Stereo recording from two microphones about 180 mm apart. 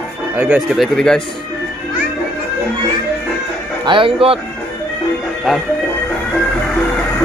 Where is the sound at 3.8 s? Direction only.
30° right (ahead or behind).